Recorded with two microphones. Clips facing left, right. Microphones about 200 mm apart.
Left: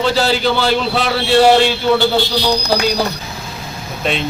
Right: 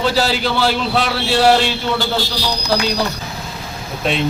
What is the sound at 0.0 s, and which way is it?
A man's voice, 5° right (ahead or behind).